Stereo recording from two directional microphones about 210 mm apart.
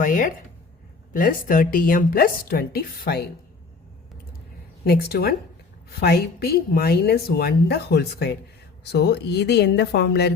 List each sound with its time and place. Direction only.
0.0 s a woman's voice: 40° left (ahead or behind)
4.9 s a woman's voice: 50° left (ahead or behind)